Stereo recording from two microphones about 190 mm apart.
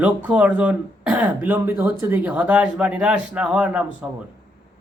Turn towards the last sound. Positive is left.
turn(degrees=-5)  # may be behind; listen again after turning